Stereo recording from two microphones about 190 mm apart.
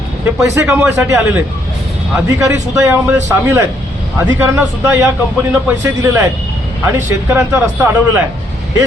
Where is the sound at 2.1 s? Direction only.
15° right (ahead or behind).